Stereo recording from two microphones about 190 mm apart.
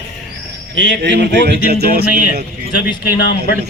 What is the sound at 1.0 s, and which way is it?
A man's voice, 60° right (ahead or behind).